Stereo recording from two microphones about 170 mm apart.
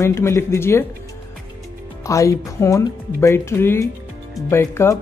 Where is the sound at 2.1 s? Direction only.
20° left (ahead or behind).